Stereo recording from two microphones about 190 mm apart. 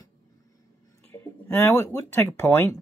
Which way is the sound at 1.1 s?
10° left (ahead or behind).